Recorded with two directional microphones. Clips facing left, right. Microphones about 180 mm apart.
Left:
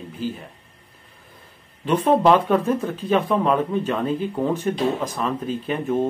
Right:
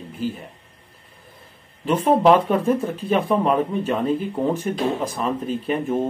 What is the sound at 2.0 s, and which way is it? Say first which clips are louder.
Speech: right 1 dB; 10° right (ahead or behind).